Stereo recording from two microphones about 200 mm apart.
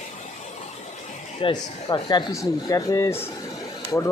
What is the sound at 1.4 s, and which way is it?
Speech, 20° left (ahead or behind).